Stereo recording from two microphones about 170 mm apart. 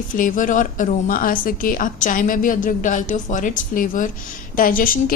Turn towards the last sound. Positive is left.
turn(degrees=55)  # may be behind; listen again after turning